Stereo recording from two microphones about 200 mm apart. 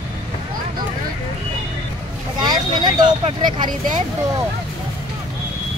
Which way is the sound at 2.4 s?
20° right (ahead or behind).